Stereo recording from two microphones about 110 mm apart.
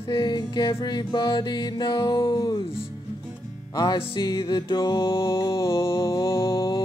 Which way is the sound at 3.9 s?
50° left (ahead or behind).